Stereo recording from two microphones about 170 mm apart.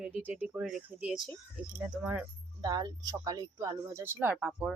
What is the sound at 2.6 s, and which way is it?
Speech, 25° right (ahead or behind).